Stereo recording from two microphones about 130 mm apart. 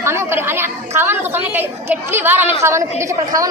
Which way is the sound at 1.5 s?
15° right (ahead or behind).